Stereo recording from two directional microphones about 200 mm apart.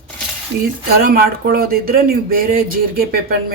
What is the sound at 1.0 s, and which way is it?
Speech, 50° right (ahead or behind).